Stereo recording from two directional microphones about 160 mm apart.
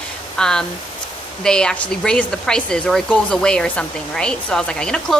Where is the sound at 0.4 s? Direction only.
5° left (ahead or behind).